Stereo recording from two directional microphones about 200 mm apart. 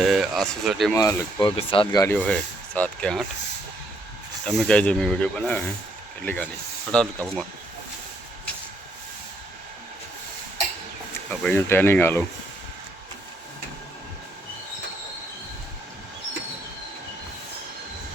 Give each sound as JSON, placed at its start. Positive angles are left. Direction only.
{"t": 0.0, "sound": "speech", "side_deg": 0}
{"t": 0.9, "sound": "speech", "side_deg": 15}
{"t": 1.5, "sound": "speech", "side_deg": 25}
{"t": 2.1, "sound": "speech", "side_deg": 5}
{"t": 4.4, "sound": "speech", "side_deg": 5}
{"t": 11.3, "sound": "speech", "side_deg": 5}